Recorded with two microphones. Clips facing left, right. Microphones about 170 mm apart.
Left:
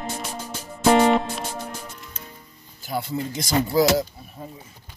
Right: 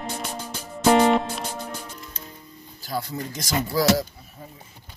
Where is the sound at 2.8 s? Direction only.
25° left (ahead or behind).